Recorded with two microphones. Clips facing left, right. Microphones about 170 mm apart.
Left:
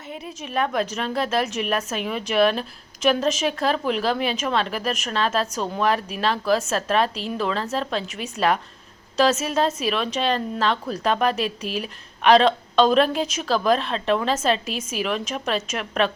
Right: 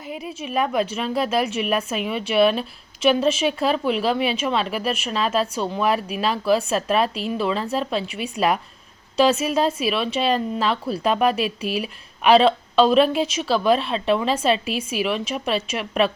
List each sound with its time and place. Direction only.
0.1 s a woman's voice: 10° right (ahead or behind)
8.0 s speech: 45° left (ahead or behind)
9.1 s a woman's voice: 10° right (ahead or behind)